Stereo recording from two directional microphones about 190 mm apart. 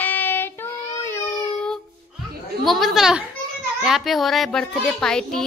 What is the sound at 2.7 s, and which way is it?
A child's voice, centre (ahead or behind).